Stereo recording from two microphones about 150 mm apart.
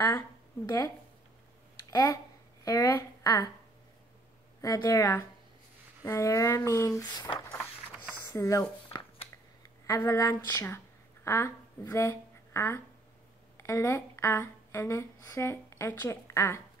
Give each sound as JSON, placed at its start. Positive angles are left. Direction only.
{"t": 0.7, "sound": "a woman's voice", "side_deg": 20}
{"t": 4.6, "sound": "speech", "side_deg": 20}
{"t": 8.3, "sound": "speech", "side_deg": 20}